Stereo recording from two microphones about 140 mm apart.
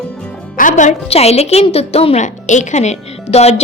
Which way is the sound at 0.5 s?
65° left (ahead or behind).